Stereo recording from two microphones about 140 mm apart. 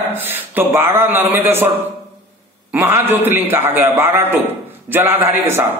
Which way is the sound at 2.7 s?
15° right (ahead or behind).